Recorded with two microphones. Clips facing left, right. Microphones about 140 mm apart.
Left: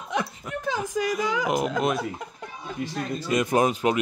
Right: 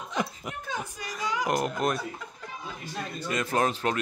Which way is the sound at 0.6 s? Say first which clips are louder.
Left 11 dB; 90° left.